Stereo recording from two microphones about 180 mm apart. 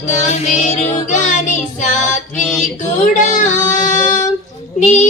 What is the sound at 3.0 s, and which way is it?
Child singing, 45° left (ahead or behind).